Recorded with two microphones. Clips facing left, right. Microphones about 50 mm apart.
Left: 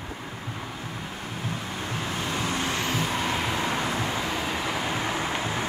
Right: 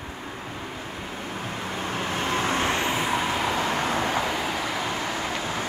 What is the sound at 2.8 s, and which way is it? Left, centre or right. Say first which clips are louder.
Vehicle: right 2 dB; right.